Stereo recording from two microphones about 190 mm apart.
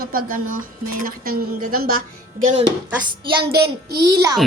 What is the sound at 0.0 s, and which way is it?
A woman's voice, 50° right (ahead or behind).